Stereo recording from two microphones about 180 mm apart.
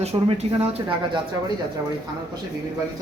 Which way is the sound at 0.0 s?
30° right (ahead or behind).